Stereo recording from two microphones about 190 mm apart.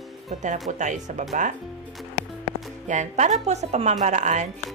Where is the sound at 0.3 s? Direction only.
40° right (ahead or behind).